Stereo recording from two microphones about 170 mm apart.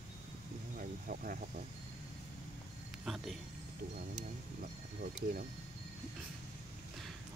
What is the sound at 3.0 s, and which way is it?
Speech, centre (ahead or behind).